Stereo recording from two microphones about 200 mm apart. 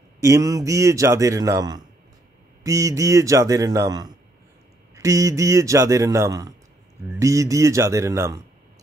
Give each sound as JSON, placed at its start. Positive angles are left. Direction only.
{"t": 0.2, "sound": "a man's voice", "side_deg": -15}